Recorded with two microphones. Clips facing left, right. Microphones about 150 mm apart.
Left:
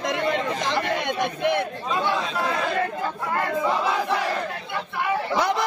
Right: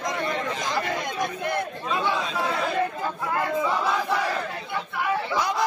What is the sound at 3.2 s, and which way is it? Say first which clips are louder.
Speech: even; 5° right (ahead or behind).